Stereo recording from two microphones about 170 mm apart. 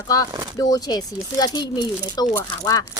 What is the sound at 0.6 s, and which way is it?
Speech, 25° left (ahead or behind).